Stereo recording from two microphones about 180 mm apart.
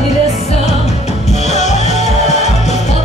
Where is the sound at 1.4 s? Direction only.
40° left (ahead or behind).